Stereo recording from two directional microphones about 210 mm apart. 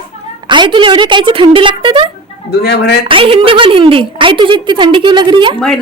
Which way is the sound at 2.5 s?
50° left (ahead or behind).